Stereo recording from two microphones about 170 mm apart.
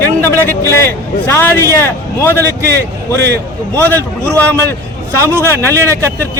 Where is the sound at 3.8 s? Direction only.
10° left (ahead or behind).